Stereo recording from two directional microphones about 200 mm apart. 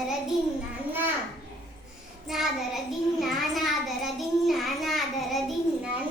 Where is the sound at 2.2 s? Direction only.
Centre (ahead or behind).